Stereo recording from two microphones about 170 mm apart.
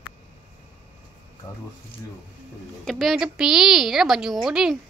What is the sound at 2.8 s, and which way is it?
A woman's voice, centre (ahead or behind).